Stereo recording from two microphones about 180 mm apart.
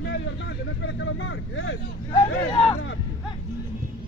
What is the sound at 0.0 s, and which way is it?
Speech, 70° left (ahead or behind).